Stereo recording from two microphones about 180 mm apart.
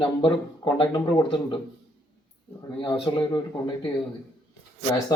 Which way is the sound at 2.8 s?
25° left (ahead or behind).